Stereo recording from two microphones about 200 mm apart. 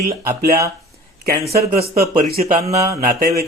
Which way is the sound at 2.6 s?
15° right (ahead or behind).